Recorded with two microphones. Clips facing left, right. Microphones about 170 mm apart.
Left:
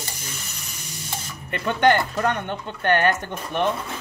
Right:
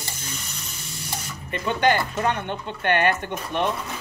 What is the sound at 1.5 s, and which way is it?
Speech, 55° left (ahead or behind).